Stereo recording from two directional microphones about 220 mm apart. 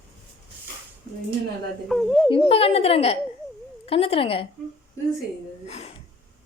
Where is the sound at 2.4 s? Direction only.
25° left (ahead or behind).